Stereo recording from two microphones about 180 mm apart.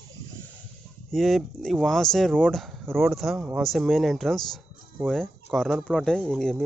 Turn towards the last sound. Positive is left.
turn(degrees=0)  # may be behind; listen again after turning